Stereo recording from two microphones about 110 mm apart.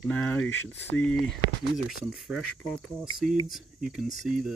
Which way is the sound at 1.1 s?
5° left (ahead or behind).